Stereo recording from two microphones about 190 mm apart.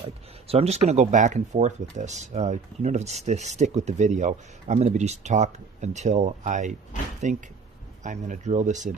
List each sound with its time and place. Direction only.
0.0 s speech: 30° right (ahead or behind)